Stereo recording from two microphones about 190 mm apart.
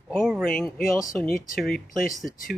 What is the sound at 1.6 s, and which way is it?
Speech, 50° left (ahead or behind).